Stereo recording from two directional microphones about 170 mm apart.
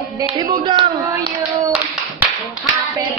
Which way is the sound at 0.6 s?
25° right (ahead or behind).